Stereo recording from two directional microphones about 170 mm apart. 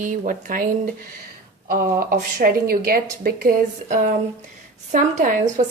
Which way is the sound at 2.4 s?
60° right (ahead or behind).